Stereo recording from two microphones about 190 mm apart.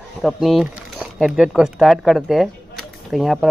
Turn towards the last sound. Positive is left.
turn(degrees=0)  # may be behind; listen again after turning